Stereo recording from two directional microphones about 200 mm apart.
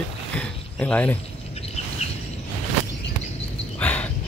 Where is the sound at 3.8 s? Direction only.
5° left (ahead or behind).